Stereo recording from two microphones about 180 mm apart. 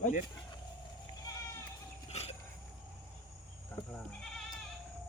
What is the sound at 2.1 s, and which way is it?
Wild animals, 35° left (ahead or behind).